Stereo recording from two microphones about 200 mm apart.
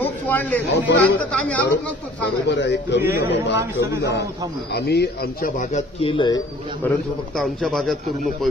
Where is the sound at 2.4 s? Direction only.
60° left (ahead or behind).